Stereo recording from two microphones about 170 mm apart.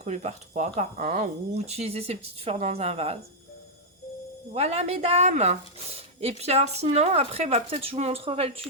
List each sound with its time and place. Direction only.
0.0 s speech: 40° right (ahead or behind)
4.5 s speech: 40° right (ahead or behind)